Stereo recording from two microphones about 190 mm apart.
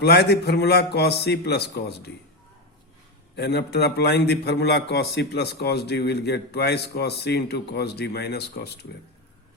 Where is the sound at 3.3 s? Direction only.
60° left (ahead or behind).